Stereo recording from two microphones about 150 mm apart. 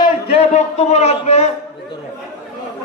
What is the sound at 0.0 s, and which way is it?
A man's voice, 40° left (ahead or behind).